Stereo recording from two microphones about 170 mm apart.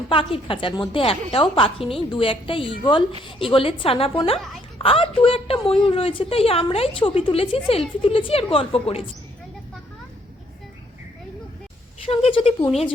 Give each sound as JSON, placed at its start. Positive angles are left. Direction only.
{"t": 0.1, "sound": "a woman's voice", "side_deg": 30}
{"t": 12.0, "sound": "a woman's voice", "side_deg": 35}